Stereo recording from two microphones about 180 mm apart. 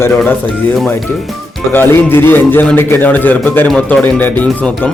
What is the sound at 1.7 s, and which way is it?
A man's voice, 10° left (ahead or behind).